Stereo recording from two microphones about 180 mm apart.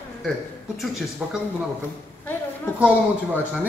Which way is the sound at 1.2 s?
Centre (ahead or behind).